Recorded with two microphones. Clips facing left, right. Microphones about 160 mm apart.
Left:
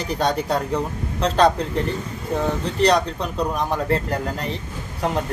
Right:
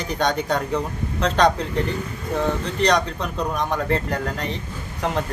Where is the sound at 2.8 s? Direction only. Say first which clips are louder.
Left 3 dB; 35° left (ahead or behind).